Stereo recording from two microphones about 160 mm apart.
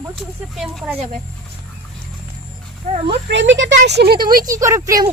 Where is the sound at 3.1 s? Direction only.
90° right.